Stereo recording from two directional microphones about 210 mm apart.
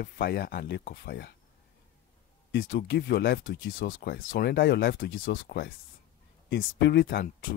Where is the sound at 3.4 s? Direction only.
65° left (ahead or behind).